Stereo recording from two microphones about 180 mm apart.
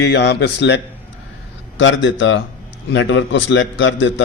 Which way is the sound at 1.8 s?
90° left.